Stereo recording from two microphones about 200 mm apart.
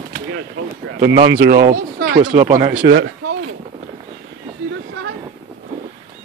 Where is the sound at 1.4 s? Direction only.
60° right (ahead or behind).